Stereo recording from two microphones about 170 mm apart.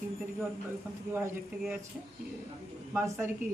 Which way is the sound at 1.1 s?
15° right (ahead or behind).